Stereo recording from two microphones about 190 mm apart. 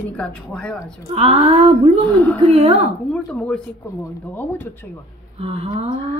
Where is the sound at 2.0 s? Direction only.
10° left (ahead or behind).